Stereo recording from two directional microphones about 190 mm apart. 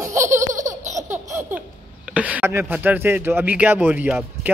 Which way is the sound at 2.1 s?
5° right (ahead or behind).